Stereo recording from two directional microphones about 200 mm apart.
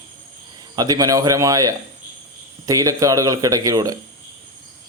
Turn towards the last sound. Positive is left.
turn(degrees=-15)  # may be behind; listen again after turning